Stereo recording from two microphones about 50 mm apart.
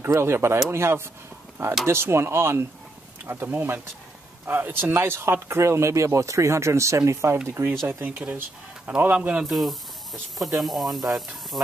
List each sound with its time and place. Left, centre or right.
0.0 s speech: right
3.3 s speech: right
7.4 s speech: right
8.0 s speech: right
9.4 s speech: centre